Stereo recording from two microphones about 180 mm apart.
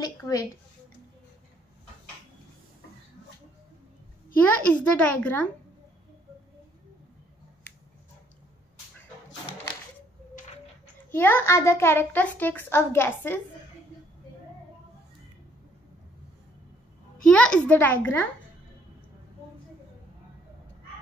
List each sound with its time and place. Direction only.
0.0 s a woman's voice: 20° left (ahead or behind)
4.4 s a child's voice: 5° left (ahead or behind)
11.1 s a child's voice: 10° left (ahead or behind)
17.2 s a child's voice: 5° left (ahead or behind)